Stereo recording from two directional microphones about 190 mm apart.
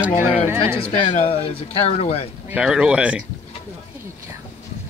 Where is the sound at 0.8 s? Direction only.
35° left (ahead or behind).